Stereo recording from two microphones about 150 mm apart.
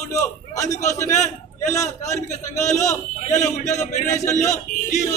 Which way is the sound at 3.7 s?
50° left (ahead or behind).